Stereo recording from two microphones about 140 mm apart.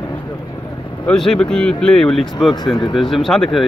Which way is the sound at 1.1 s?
5° left (ahead or behind).